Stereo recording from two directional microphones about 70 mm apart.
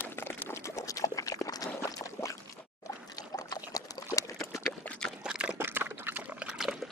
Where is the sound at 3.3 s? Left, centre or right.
Left.